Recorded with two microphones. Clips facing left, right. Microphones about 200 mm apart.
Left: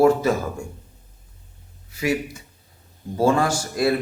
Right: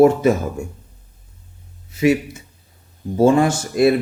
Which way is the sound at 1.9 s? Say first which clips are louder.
Right 7 dB; 25° right (ahead or behind).